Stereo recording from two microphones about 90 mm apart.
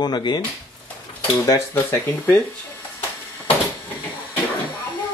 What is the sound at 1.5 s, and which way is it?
Speech, 30° left (ahead or behind).